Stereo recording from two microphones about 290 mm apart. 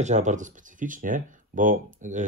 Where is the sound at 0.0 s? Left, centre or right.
Right.